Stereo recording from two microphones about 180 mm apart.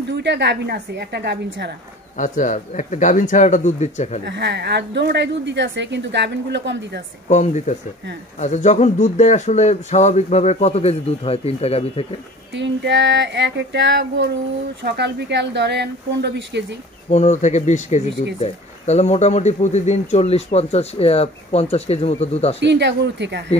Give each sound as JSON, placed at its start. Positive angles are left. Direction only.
{"t": 0.1, "sound": "a woman's voice", "side_deg": -70}
{"t": 2.1, "sound": "speech", "side_deg": 45}
{"t": 4.3, "sound": "a woman's voice", "side_deg": -70}
{"t": 7.2, "sound": "speech", "side_deg": 40}
{"t": 12.5, "sound": "a woman's voice", "side_deg": -75}
{"t": 17.1, "sound": "speech", "side_deg": 40}
{"t": 22.6, "sound": "a woman's voice", "side_deg": -70}